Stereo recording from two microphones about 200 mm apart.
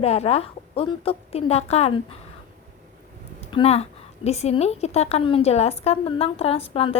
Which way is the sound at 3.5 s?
30° left (ahead or behind).